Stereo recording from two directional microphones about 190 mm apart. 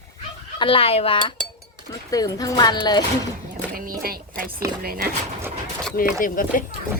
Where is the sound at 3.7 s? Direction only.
50° right (ahead or behind).